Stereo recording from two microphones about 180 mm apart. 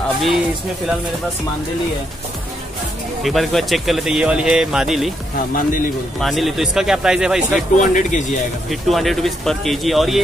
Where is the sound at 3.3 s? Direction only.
Centre (ahead or behind).